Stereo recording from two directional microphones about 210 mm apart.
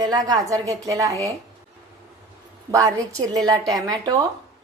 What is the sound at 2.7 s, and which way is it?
A woman's voice, 15° right (ahead or behind).